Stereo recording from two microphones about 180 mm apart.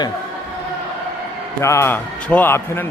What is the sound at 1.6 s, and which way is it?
A man's voice, 15° left (ahead or behind).